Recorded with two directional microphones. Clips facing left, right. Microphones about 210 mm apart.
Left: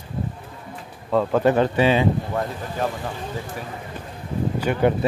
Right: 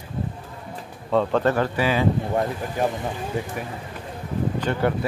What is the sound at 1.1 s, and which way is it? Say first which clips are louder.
Speech: left 1 dB; 5° left (ahead or behind).